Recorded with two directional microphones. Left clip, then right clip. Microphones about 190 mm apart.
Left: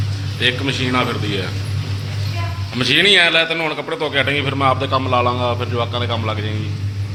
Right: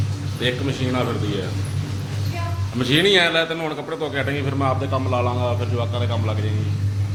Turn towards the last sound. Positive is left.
turn(degrees=20)  # may be behind; listen again after turning